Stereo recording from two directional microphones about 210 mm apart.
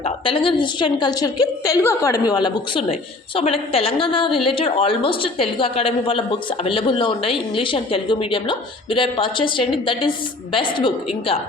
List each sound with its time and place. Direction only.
0.0 s a woman's voice: 25° left (ahead or behind)